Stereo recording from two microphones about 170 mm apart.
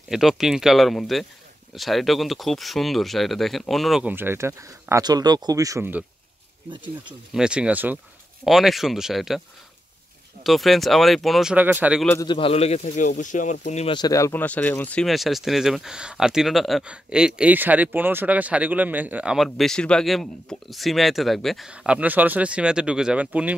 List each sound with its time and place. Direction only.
0.1 s speech: centre (ahead or behind)
6.7 s speech: 30° right (ahead or behind)
7.3 s speech: 5° right (ahead or behind)
10.4 s speech: centre (ahead or behind)
12.3 s speech: 30° left (ahead or behind)
13.8 s speech: 25° left (ahead or behind); by 23.5 s 10° right (ahead or behind)